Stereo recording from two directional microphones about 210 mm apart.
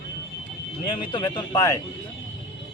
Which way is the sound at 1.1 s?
20° left (ahead or behind).